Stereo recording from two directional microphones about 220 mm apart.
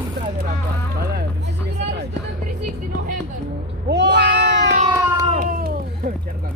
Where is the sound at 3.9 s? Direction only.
50° right (ahead or behind).